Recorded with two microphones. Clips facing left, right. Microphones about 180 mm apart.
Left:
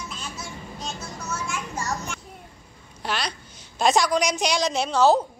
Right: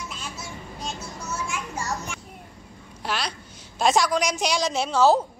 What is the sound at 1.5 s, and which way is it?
Children playing, 10° right (ahead or behind).